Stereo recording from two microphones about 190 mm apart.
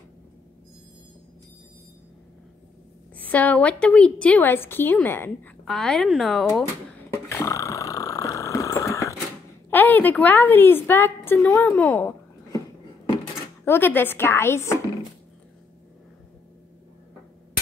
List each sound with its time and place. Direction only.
3.2 s a woman's voice: 10° left (ahead or behind)
7.2 s a sound: 15° left (ahead or behind)
9.7 s a woman's voice: 10° left (ahead or behind)
13.7 s a woman's voice: 10° left (ahead or behind)